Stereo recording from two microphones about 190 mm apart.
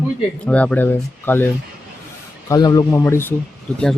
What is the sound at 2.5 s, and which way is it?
Speech, 20° left (ahead or behind).